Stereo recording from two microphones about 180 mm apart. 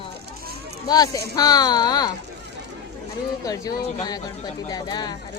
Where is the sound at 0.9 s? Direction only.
20° left (ahead or behind).